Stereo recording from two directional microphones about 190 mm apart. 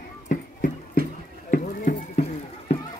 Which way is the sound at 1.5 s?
45° left (ahead or behind).